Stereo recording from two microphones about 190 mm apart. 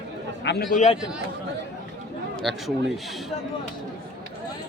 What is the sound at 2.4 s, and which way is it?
Speech, centre (ahead or behind).